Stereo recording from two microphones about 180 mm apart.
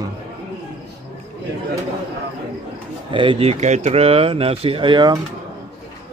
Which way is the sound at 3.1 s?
30° right (ahead or behind).